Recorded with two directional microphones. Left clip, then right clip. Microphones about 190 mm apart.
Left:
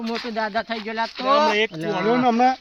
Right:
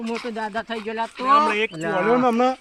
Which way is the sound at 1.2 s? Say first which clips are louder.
Right 1 dB; 65° left (ahead or behind).